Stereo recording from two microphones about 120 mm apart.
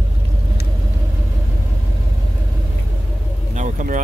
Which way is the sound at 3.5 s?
85° right.